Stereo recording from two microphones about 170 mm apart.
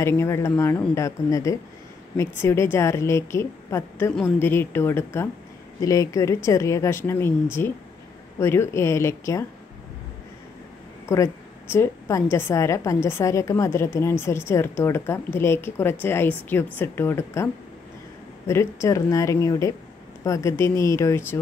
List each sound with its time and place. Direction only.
0.0 s a woman's voice: 15° left (ahead or behind)
11.1 s a woman's voice: 15° left (ahead or behind)
18.5 s a woman's voice: 15° left (ahead or behind)